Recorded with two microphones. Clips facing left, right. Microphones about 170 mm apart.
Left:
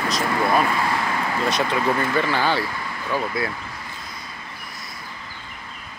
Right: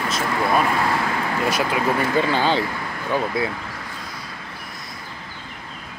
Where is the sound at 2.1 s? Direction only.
20° right (ahead or behind).